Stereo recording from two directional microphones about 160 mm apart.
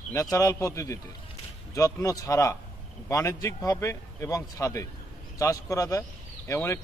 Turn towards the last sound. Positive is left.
turn(degrees=15)  # may be behind; listen again after turning